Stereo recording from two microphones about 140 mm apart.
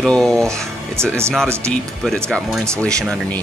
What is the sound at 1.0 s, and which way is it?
Speech, 20° right (ahead or behind).